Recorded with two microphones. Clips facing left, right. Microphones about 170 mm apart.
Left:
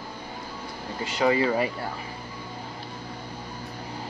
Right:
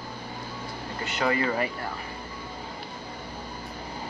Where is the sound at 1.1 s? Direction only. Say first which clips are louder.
Left 4 dB; 15° left (ahead or behind).